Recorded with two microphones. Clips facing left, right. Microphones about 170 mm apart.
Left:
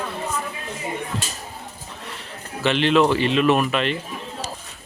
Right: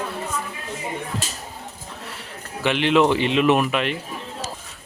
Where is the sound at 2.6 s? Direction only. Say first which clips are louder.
Even; 15° right (ahead or behind).